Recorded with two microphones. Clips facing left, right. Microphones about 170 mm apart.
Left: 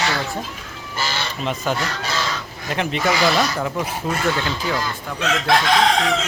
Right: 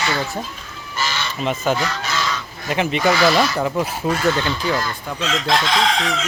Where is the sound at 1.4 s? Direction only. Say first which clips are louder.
Right 4 dB; centre (ahead or behind).